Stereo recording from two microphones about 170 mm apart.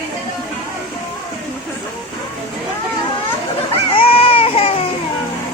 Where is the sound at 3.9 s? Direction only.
35° left (ahead or behind).